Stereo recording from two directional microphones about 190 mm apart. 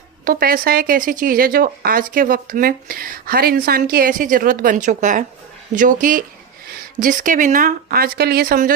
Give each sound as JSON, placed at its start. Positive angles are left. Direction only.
{"t": 0.3, "sound": "speech", "side_deg": -50}